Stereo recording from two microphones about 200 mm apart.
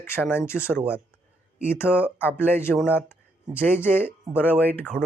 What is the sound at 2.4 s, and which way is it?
Speech, 10° left (ahead or behind).